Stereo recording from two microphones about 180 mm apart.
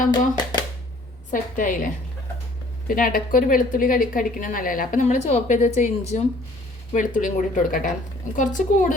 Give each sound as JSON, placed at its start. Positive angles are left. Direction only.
{"t": 1.3, "sound": "a woman's voice", "side_deg": 50}